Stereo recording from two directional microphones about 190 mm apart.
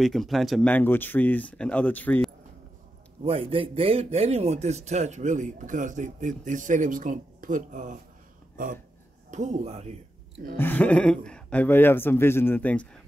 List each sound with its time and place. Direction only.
0.0 s speech: centre (ahead or behind)
3.3 s a man's voice: 30° right (ahead or behind)
9.3 s a man's voice: 40° right (ahead or behind)
10.6 s speech: 10° left (ahead or behind)